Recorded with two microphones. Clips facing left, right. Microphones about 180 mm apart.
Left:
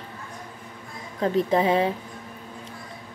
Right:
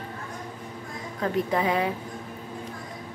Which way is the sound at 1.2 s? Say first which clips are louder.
Left 4 dB; 25° left (ahead or behind).